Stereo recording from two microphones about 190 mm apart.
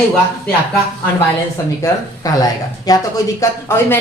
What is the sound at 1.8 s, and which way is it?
Speech, 20° left (ahead or behind).